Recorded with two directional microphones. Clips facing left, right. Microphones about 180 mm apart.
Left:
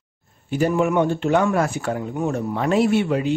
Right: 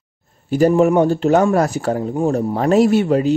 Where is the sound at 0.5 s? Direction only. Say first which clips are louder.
Right 6 dB; 40° right (ahead or behind).